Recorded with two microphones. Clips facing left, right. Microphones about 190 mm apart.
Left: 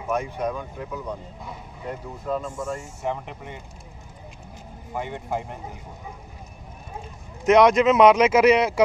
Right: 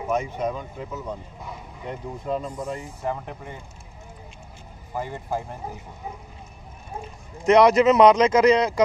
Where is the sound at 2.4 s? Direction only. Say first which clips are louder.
Even; 45° left (ahead or behind).